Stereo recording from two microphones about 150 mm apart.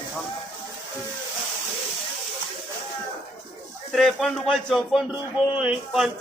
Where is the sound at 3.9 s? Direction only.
5° left (ahead or behind).